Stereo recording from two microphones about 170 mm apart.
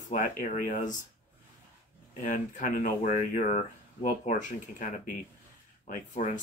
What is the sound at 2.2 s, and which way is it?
Speech, 50° left (ahead or behind).